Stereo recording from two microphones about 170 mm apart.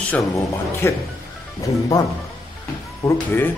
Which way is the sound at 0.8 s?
15° left (ahead or behind).